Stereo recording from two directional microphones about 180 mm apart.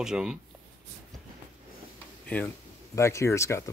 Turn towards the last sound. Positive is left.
turn(degrees=15)  # may be behind; listen again after turning